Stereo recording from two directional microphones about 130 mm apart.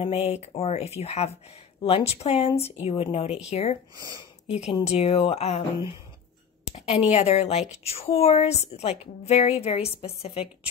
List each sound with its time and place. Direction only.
0.0 s a woman's voice: 55° left (ahead or behind)